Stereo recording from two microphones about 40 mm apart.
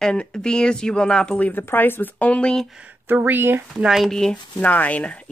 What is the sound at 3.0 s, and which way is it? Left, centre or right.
Speech, right.